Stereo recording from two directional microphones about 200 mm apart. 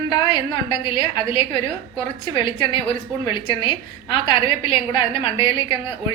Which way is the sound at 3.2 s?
25° left (ahead or behind).